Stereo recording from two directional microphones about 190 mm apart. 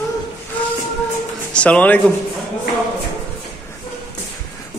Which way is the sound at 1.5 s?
5° left (ahead or behind).